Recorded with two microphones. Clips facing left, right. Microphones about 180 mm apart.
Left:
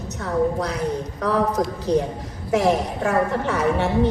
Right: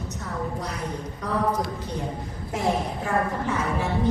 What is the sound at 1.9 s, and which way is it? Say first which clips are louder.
A woman's voice: left 10 dB; 75° left (ahead or behind).